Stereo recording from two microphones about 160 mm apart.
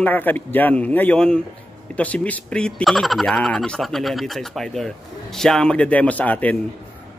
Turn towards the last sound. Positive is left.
turn(degrees=10)  # may be behind; listen again after turning